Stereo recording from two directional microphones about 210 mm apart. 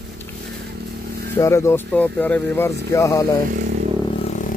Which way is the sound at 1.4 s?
15° left (ahead or behind).